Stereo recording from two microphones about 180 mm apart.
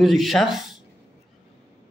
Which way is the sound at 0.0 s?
Centre (ahead or behind).